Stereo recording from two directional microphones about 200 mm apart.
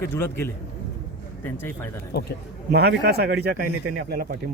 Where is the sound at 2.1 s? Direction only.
50° left (ahead or behind).